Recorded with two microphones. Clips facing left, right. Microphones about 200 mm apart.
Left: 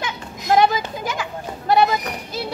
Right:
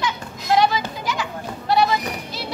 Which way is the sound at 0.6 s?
50° left (ahead or behind).